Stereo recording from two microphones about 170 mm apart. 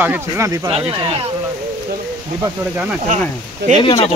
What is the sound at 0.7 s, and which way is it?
Speech, 30° right (ahead or behind).